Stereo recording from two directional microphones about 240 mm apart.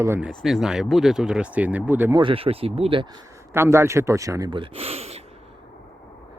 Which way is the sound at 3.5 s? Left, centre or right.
Centre.